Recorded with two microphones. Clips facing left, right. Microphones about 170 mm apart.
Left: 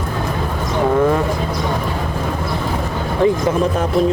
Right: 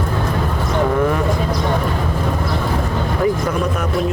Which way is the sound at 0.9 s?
25° left (ahead or behind).